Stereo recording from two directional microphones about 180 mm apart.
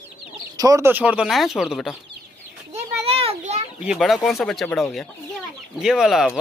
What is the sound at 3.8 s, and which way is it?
Speech, centre (ahead or behind).